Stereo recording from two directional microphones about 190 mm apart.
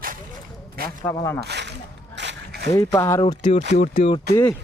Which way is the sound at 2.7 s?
10° left (ahead or behind).